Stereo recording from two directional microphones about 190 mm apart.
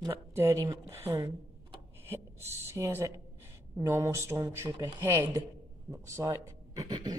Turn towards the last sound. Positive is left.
turn(degrees=-20)  # may be behind; listen again after turning